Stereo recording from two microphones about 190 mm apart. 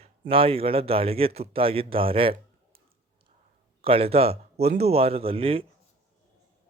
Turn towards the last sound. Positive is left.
turn(degrees=-30)  # may be behind; listen again after turning